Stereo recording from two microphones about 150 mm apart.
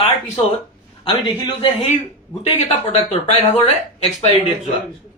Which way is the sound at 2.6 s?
45° left (ahead or behind).